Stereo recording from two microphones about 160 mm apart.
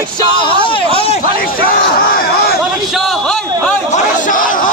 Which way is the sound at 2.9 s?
5° left (ahead or behind).